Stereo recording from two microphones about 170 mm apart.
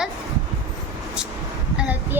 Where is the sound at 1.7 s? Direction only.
10° right (ahead or behind).